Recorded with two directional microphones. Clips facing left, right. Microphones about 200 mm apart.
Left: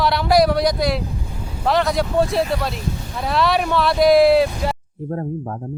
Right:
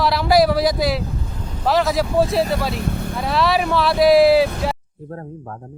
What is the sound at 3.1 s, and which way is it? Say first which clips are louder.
Speech: even; centre (ahead or behind).